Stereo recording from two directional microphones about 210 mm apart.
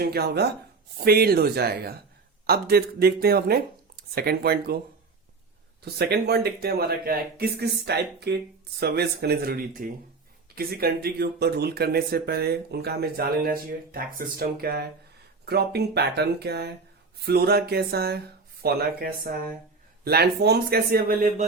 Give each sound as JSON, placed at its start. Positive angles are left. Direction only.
{"t": 0.0, "sound": "speech", "side_deg": -50}
{"t": 5.8, "sound": "speech", "side_deg": -50}